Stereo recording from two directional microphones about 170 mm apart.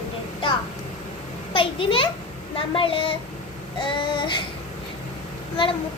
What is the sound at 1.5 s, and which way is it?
A child's voice, 30° left (ahead or behind).